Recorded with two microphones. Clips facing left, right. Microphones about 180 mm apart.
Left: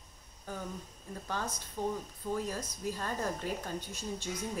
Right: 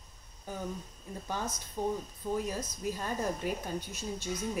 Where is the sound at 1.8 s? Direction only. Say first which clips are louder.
Right 2 dB; 20° right (ahead or behind).